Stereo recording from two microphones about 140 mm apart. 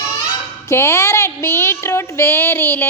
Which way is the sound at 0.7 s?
20° left (ahead or behind).